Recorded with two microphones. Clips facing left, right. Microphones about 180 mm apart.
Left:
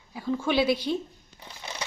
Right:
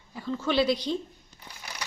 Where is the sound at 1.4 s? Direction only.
25° left (ahead or behind).